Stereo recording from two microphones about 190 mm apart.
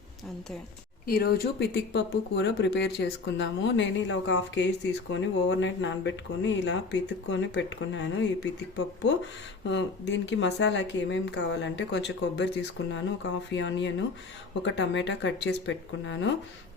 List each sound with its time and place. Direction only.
1.0 s speech: 55° left (ahead or behind)
13.5 s speech: 75° left (ahead or behind)